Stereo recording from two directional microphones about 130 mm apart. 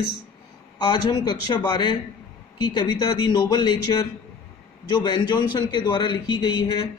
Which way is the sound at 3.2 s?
35° left (ahead or behind).